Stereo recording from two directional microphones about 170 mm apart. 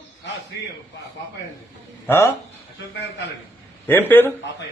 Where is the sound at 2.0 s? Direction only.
15° left (ahead or behind).